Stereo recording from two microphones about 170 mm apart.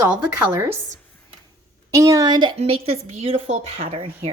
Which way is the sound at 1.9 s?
20° right (ahead or behind).